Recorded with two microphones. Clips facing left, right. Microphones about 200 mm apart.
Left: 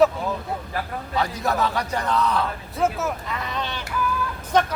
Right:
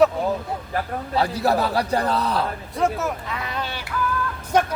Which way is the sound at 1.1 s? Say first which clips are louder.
Right 3 dB; 30° right (ahead or behind).